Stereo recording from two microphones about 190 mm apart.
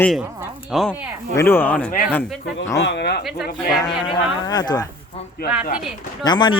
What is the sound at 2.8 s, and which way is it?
Speech, 60° left (ahead or behind).